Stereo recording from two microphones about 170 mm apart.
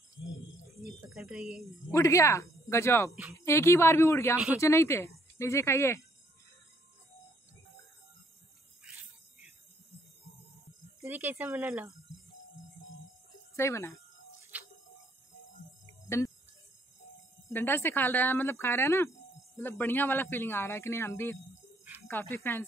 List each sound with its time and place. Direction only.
0.8 s speech: 5° right (ahead or behind)
1.9 s a man's voice: 15° left (ahead or behind)
11.0 s speech: 10° right (ahead or behind)
13.6 s a man's voice: 15° left (ahead or behind)
14.5 s a sound: 10° right (ahead or behind)
17.5 s a man's voice: 15° left (ahead or behind)